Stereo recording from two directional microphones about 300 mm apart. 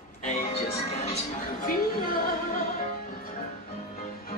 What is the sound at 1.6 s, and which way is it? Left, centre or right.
Music, left.